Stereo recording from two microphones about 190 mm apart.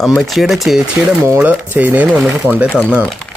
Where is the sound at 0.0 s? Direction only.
Centre (ahead or behind).